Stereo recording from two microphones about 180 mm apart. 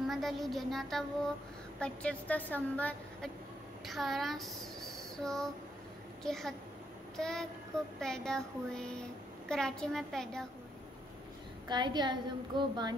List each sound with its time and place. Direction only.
0.0 s child singing: centre (ahead or behind)
1.8 s a woman's voice: 5° left (ahead or behind)
3.8 s child singing: centre (ahead or behind)
5.1 s a sound: 5° left (ahead or behind)
6.2 s child singing: centre (ahead or behind)
11.6 s a woman's voice: 25° right (ahead or behind)